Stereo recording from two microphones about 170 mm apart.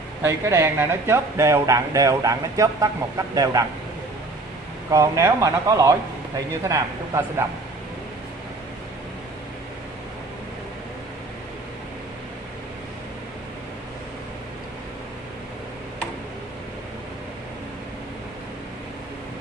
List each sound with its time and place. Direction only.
0.2 s speech: 15° right (ahead or behind)
4.9 s speech: 20° right (ahead or behind)